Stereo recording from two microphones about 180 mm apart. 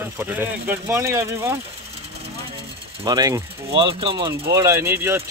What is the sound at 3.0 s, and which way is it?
Speech, 20° right (ahead or behind).